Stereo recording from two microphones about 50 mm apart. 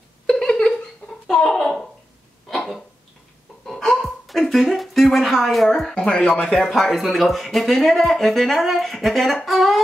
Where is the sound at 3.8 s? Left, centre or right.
Centre.